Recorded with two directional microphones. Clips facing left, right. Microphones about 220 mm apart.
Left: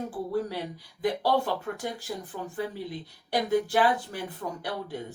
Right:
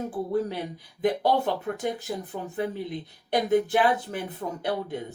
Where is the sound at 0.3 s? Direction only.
20° right (ahead or behind).